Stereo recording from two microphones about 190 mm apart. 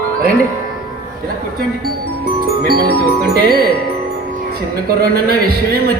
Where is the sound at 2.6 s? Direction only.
50° right (ahead or behind).